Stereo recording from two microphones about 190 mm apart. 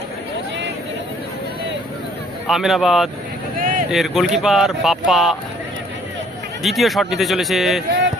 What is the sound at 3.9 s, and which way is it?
Speech, centre (ahead or behind).